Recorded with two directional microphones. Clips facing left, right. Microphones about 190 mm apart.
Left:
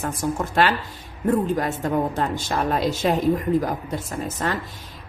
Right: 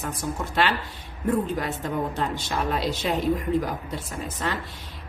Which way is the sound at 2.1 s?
45° left (ahead or behind).